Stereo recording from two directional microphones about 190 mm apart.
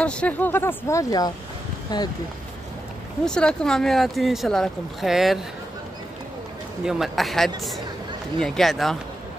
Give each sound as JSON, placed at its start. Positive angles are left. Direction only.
{"t": 0.0, "sound": "speech", "side_deg": 5}
{"t": 3.3, "sound": "speech", "side_deg": 5}
{"t": 6.8, "sound": "speech", "side_deg": 0}